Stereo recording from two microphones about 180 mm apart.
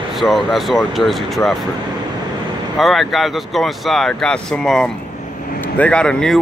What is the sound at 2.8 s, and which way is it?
Speech, centre (ahead or behind).